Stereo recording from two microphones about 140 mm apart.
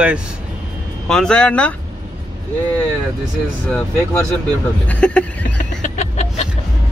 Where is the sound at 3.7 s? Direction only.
10° left (ahead or behind).